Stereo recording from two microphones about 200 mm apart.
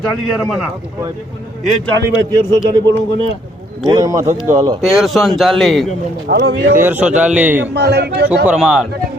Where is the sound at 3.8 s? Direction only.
15° right (ahead or behind).